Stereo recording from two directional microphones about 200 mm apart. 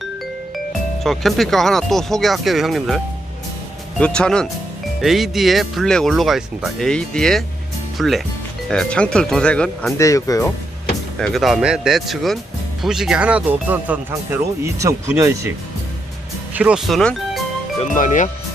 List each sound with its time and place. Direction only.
1.0 s speech: centre (ahead or behind)
4.0 s speech: 5° left (ahead or behind)
10.0 s speech: 15° left (ahead or behind)
11.2 s speech: centre (ahead or behind); by 15.4 s 15° right (ahead or behind)
16.6 s speech: 5° right (ahead or behind)
17.9 s speech: 40° left (ahead or behind)